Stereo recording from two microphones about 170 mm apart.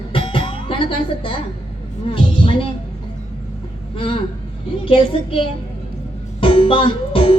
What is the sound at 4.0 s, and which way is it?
Speech, 30° left (ahead or behind).